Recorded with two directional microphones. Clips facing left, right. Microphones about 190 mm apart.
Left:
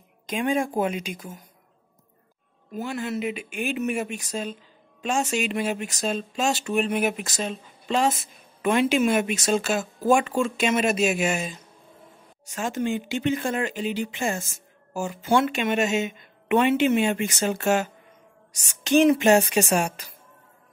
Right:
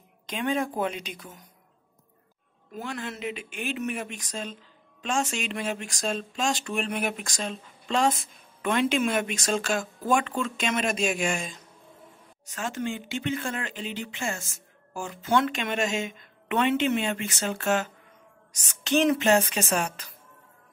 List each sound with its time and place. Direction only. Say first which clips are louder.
0.3 s speech: left 3 dB; 10° left (ahead or behind)
2.7 s speech: left 6 dB; 5° left (ahead or behind)